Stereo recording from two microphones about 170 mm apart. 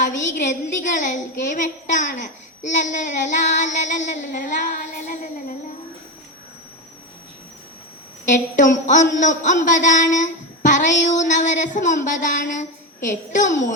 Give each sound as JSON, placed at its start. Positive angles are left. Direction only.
{"t": 0.4, "sound": "a woman's voice", "side_deg": 50}
{"t": 8.3, "sound": "a woman's voice", "side_deg": 50}